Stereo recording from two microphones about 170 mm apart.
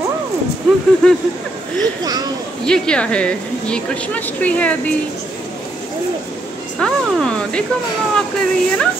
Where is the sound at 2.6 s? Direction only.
5° left (ahead or behind).